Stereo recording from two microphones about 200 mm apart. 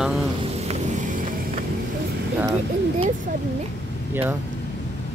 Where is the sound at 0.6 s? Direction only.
30° right (ahead or behind).